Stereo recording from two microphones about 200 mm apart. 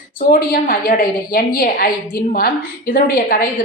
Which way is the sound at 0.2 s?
45° left (ahead or behind).